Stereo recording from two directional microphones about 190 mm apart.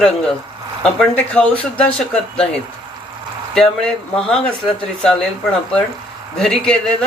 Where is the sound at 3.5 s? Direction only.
5° left (ahead or behind).